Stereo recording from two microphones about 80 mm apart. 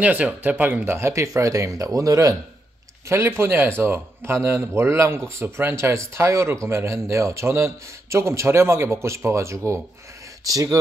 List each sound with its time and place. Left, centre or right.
0.0 s speech: right
0.9 s speech: right
3.1 s speech: right